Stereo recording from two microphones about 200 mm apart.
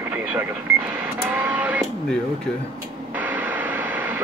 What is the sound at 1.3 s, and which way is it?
Speech, 10° right (ahead or behind).